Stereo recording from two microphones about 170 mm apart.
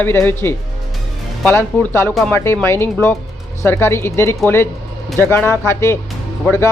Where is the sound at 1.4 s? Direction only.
10° left (ahead or behind).